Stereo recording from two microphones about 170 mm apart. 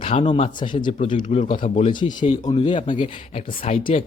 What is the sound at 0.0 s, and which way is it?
Speech, 40° left (ahead or behind).